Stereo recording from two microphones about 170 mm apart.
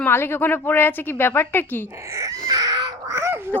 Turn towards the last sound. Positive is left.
turn(degrees=-15)  # may be behind; listen again after turning